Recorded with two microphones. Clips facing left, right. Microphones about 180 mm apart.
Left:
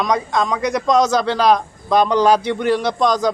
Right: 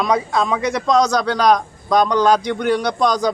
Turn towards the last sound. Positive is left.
turn(degrees=0)  # may be behind; listen again after turning